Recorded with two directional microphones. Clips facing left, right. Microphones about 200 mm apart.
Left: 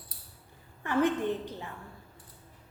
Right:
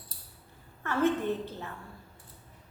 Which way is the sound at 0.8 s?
15° left (ahead or behind).